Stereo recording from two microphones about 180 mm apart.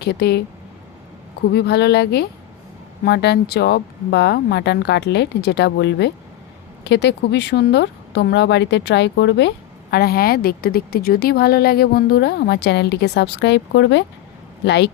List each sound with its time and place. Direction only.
0.0 s a woman's voice: 65° left (ahead or behind)
1.5 s a woman's voice: 65° left (ahead or behind)
9.9 s a woman's voice: 60° left (ahead or behind); by 14.8 s 75° left (ahead or behind)